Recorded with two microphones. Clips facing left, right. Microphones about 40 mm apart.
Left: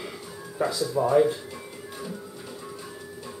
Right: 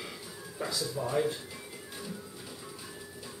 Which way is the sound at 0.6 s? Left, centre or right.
Left.